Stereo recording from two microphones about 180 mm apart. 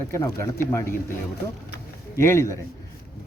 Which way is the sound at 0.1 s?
15° left (ahead or behind).